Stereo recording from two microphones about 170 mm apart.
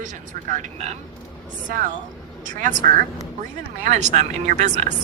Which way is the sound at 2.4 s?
50° right (ahead or behind).